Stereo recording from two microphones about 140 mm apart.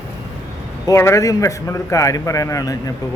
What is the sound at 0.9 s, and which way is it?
Speech, 20° left (ahead or behind).